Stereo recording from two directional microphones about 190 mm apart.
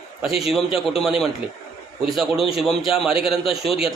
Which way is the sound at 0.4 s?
Centre (ahead or behind).